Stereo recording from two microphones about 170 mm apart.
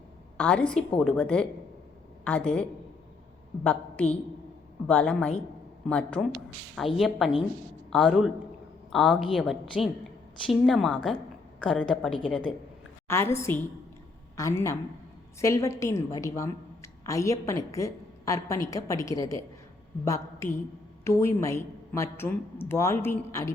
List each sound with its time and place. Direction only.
0.3 s a woman's voice: 10° left (ahead or behind)